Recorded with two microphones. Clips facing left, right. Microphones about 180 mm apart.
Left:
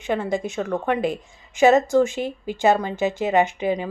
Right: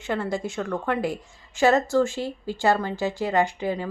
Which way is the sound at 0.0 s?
20° left (ahead or behind).